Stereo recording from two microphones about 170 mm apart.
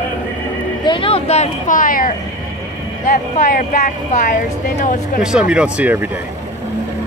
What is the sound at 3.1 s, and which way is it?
Speech, 55° left (ahead or behind).